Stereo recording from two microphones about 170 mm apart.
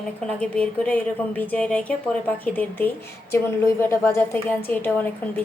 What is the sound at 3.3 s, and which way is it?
A woman's voice, 15° left (ahead or behind).